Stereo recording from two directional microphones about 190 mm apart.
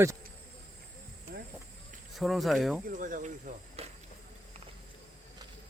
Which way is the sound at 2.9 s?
45° right (ahead or behind).